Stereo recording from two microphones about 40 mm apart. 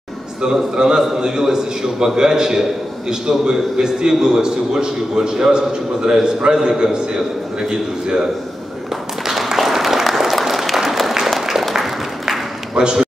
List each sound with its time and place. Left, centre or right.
0.5 s a man's voice: centre
9.2 s applause: centre
11.7 s a sound: centre